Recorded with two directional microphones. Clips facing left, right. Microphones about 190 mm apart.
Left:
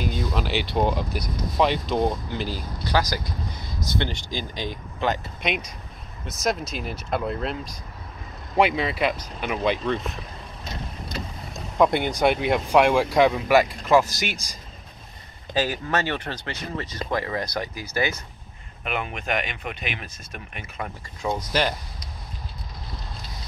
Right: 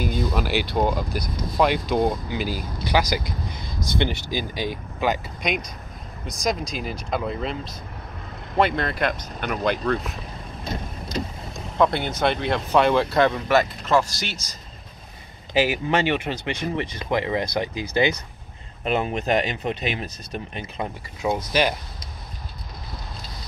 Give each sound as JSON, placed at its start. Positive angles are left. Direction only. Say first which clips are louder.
{"t": 0.3, "sound": "speech", "louder": "right 2 dB", "side_deg": -5}
{"t": 8.5, "sound": "speech", "louder": "even", "side_deg": 5}
{"t": 11.8, "sound": "speech", "louder": "left 1 dB", "side_deg": 15}
{"t": 15.5, "sound": "speech", "louder": "right 4 dB", "side_deg": -10}
{"t": 21.2, "sound": "speech", "louder": "right 2 dB", "side_deg": -10}